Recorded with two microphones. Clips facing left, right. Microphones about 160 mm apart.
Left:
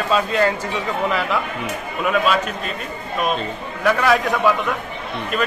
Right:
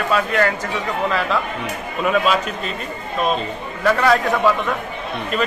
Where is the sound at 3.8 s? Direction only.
Centre (ahead or behind).